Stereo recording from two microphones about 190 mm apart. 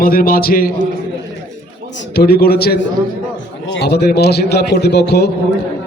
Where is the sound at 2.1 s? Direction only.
55° left (ahead or behind).